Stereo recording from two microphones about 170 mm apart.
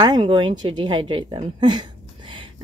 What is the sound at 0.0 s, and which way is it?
A woman's voice, 25° right (ahead or behind).